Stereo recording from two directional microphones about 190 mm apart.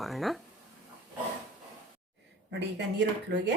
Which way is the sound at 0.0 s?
Centre (ahead or behind).